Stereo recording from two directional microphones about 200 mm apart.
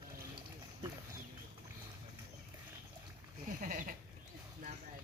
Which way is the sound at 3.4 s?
40° right (ahead or behind).